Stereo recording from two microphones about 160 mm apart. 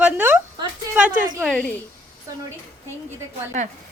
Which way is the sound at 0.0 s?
10° right (ahead or behind).